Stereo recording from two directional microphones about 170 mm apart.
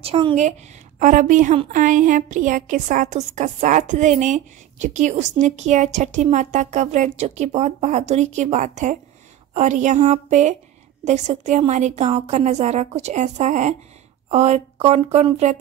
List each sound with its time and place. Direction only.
0.0 s a woman's voice: 35° right (ahead or behind)